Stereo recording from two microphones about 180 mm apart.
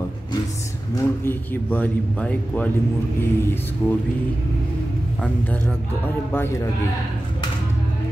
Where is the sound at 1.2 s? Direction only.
10° left (ahead or behind).